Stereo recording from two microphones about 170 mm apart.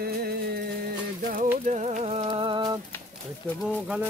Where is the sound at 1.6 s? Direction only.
45° right (ahead or behind); by 2.7 s 30° right (ahead or behind).